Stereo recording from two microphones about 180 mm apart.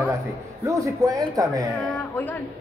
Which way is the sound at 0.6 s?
20° right (ahead or behind).